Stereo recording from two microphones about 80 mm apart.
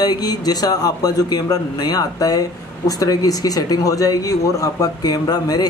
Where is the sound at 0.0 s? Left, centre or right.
Left.